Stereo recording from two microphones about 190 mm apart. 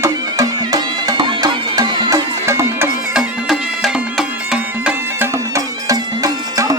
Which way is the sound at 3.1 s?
Centre (ahead or behind).